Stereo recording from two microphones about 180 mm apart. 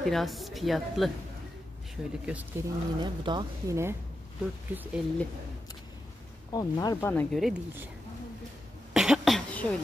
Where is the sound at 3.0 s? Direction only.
25° right (ahead or behind).